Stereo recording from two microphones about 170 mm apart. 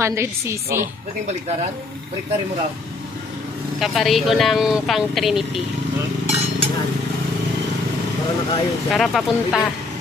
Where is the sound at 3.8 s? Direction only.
Centre (ahead or behind).